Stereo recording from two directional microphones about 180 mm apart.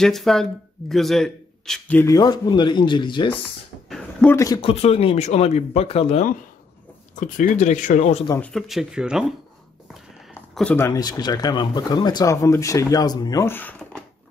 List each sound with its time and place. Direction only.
0.0 s speech: centre (ahead or behind)
2.1 s speech: 20° left (ahead or behind)
3.9 s a sound: 5° left (ahead or behind)
4.6 s speech: 35° left (ahead or behind)
8.4 s speech: 5° left (ahead or behind)
10.5 s speech: 5° left (ahead or behind)
11.0 s speech: 20° left (ahead or behind)